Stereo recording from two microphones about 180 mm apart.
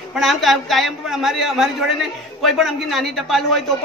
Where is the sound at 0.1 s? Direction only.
Centre (ahead or behind).